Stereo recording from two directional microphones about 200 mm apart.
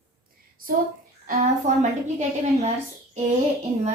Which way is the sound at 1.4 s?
35° right (ahead or behind).